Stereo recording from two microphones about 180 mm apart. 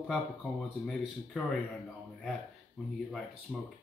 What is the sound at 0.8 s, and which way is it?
Speech, centre (ahead or behind).